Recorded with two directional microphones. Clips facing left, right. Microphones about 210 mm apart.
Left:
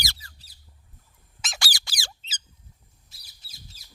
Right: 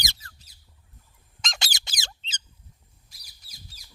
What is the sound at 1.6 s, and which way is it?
Squeak, 20° right (ahead or behind).